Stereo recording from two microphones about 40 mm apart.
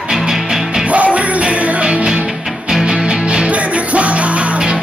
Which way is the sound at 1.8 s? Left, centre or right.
Right.